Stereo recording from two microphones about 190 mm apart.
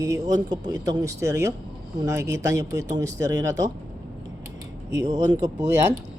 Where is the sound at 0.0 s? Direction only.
20° right (ahead or behind).